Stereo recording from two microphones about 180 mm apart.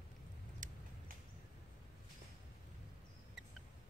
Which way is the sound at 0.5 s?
45° right (ahead or behind).